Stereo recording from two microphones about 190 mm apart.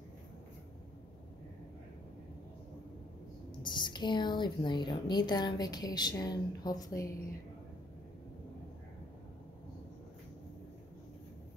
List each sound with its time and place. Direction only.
3.6 s speech: 25° left (ahead or behind)